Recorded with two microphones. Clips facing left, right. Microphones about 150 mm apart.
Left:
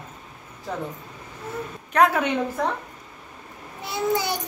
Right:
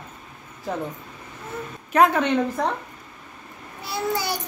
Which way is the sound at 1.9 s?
5° left (ahead or behind).